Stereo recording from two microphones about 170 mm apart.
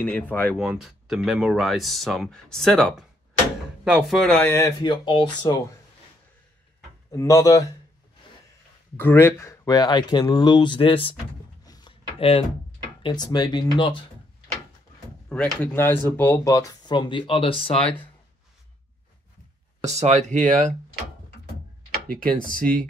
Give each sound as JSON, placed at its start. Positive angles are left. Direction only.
{"t": 0.0, "sound": "speech", "side_deg": 10}
{"t": 0.6, "sound": "speech", "side_deg": 0}
{"t": 7.1, "sound": "speech", "side_deg": 20}
{"t": 8.9, "sound": "speech", "side_deg": 15}
{"t": 11.6, "sound": "a sound", "side_deg": 25}
{"t": 13.0, "sound": "speech", "side_deg": 25}
{"t": 15.3, "sound": "speech", "side_deg": 5}
{"t": 19.8, "sound": "speech", "side_deg": -40}
{"t": 22.0, "sound": "speech", "side_deg": -55}